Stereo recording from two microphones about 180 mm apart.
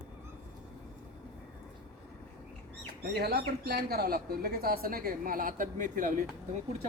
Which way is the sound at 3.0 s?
65° right (ahead or behind).